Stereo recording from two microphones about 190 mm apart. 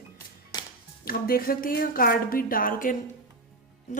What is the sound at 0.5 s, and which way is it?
Music, 20° left (ahead or behind).